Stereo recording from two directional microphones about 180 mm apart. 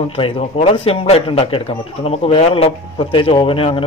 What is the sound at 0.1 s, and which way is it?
A man's voice, 35° left (ahead or behind).